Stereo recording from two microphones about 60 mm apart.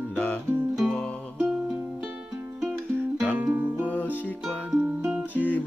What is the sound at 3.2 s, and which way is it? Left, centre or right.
Music, right.